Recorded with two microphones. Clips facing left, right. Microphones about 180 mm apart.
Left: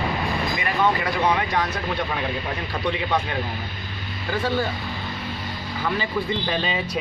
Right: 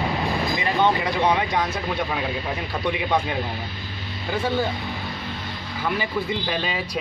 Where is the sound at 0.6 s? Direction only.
25° right (ahead or behind).